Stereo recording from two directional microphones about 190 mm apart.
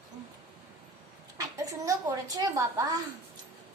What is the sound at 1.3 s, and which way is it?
A woman's voice, 15° right (ahead or behind).